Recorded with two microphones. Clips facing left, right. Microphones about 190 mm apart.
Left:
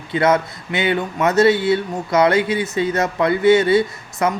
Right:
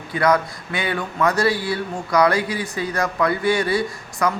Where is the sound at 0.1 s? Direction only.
25° left (ahead or behind).